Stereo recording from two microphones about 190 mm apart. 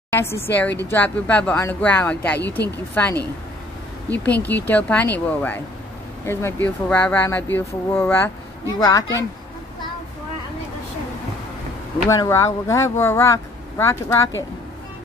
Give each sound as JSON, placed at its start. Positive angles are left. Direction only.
{"t": 0.1, "sound": "speech", "side_deg": 15}
{"t": 12.1, "sound": "speech", "side_deg": 15}